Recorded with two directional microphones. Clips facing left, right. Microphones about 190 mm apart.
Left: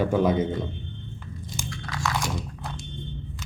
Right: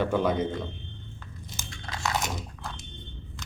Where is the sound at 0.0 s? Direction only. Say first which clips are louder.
Left 3 dB; 10° left (ahead or behind).